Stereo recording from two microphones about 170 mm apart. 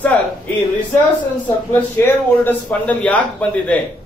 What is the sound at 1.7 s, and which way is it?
A man's voice, 10° left (ahead or behind).